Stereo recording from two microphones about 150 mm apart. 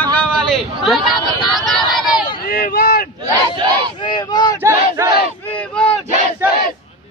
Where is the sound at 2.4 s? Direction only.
80° left.